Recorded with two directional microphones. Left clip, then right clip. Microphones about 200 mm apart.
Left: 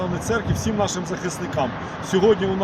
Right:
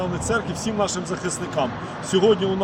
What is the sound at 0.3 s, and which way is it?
Speech, 10° left (ahead or behind).